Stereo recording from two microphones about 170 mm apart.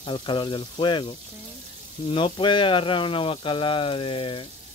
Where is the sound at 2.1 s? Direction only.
30° left (ahead or behind).